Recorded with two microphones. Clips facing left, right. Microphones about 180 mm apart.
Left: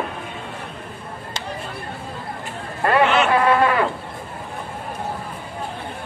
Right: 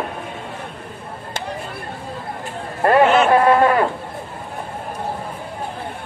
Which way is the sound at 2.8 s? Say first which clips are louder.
Right 4 dB; 45° right (ahead or behind).